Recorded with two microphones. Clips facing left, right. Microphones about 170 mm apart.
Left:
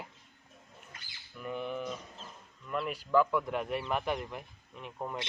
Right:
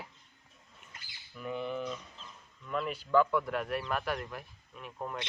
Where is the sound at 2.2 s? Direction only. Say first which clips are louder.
Left 3 dB; 45° left (ahead or behind).